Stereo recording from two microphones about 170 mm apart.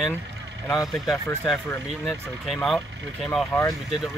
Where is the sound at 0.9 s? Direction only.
Centre (ahead or behind).